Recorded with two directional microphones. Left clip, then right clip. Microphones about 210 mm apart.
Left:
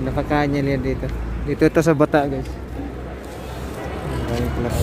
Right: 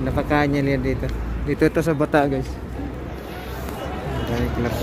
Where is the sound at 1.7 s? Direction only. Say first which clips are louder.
Left 5 dB; 20° left (ahead or behind).